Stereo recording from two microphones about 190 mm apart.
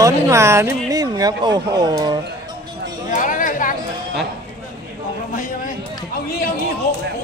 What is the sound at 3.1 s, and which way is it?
Speech, 45° left (ahead or behind).